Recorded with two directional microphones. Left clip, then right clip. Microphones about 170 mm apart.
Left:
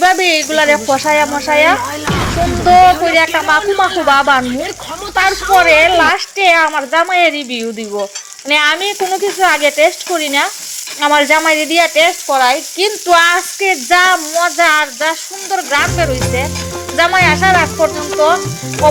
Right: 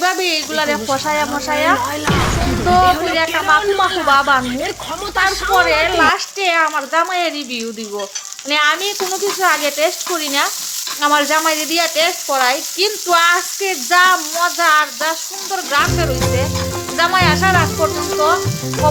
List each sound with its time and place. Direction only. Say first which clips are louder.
0.0 s sizzle: left 6 dB; 25° left (ahead or behind)
0.9 s frying: left 5 dB; 25° left (ahead or behind)
1.8 s speech: even; centre (ahead or behind)
3.1 s frying: left 5 dB; 20° left (ahead or behind)
3.6 s speech: left 3 dB; centre (ahead or behind)
4.1 s frying: left 3 dB; 25° left (ahead or behind)
4.4 s speech: left 2 dB; centre (ahead or behind)
5.5 s frying: left 6 dB; 25° left (ahead or behind)
8.4 s speech: left 3 dB; 20° left (ahead or behind)
11.0 s frying: left 4 dB; 20° left (ahead or behind)
15.5 s speech: left 3 dB; 20° left (ahead or behind)
17.0 s frying: left 4 dB; 20° left (ahead or behind)
17.7 s speech: left 4 dB; 10° left (ahead or behind)